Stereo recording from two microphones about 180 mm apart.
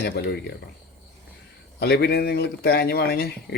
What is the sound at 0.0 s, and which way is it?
Speech, 65° left (ahead or behind).